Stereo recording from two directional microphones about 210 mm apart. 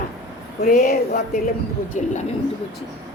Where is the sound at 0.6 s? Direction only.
40° left (ahead or behind).